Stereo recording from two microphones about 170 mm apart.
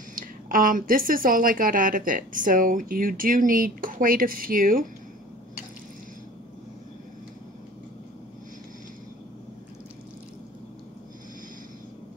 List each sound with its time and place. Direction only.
0.1 s a woman's voice: 55° right (ahead or behind)